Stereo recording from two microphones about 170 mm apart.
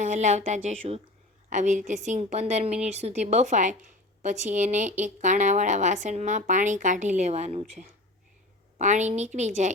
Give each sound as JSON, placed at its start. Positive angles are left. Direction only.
{"t": 0.0, "sound": "speech", "side_deg": -45}